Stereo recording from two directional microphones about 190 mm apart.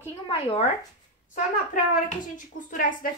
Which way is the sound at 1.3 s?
45° left (ahead or behind).